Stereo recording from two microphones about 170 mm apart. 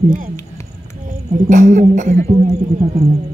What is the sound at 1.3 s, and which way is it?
Speech, 50° right (ahead or behind).